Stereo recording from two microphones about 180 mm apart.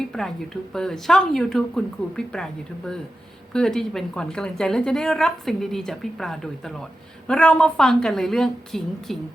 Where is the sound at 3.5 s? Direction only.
Centre (ahead or behind).